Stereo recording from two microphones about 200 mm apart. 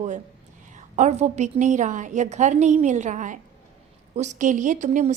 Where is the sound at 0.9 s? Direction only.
35° right (ahead or behind).